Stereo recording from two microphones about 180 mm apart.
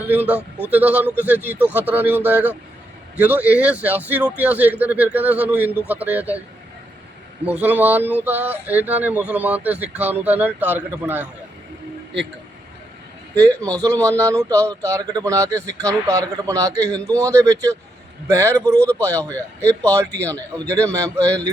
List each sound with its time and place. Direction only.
0.1 s speech: 10° right (ahead or behind)
7.4 s speech: 10° right (ahead or behind)
13.3 s speech: 5° left (ahead or behind)
13.7 s a man's voice: 20° right (ahead or behind)
13.9 s speech: 10° left (ahead or behind)
14.2 s speech: 15° right (ahead or behind)
16.8 s speech: 5° left (ahead or behind)
17.2 s speech: 15° right (ahead or behind)
19.1 s speech: 10° left (ahead or behind)